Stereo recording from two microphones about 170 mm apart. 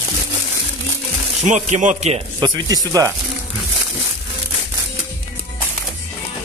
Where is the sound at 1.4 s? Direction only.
45° right (ahead or behind).